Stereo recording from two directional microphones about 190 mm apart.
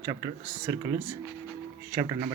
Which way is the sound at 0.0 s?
20° right (ahead or behind).